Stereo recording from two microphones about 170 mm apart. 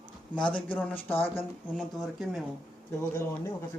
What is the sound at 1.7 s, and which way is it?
Speech, centre (ahead or behind).